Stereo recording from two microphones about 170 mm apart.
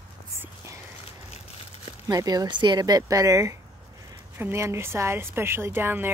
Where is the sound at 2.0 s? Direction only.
20° right (ahead or behind).